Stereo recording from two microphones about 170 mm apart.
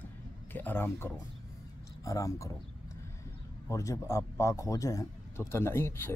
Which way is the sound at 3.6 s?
20° left (ahead or behind).